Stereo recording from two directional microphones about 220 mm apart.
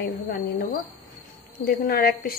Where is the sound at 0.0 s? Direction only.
45° left (ahead or behind).